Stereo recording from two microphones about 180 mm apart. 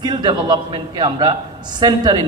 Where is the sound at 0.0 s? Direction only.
25° right (ahead or behind).